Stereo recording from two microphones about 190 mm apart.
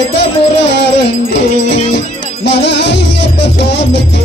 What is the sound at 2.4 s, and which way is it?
Music, 65° left (ahead or behind).